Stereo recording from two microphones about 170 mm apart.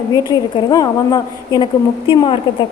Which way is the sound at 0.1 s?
25° left (ahead or behind).